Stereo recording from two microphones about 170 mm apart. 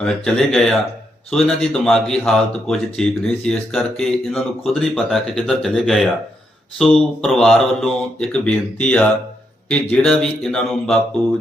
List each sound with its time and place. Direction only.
0.0 s speech: 5° left (ahead or behind)